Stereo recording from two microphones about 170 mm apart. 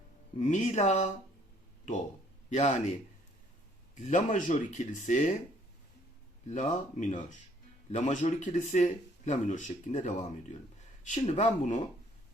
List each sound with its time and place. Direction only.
0.3 s speech: 45° left (ahead or behind)
3.9 s speech: 45° left (ahead or behind)
6.5 s speech: 45° left (ahead or behind)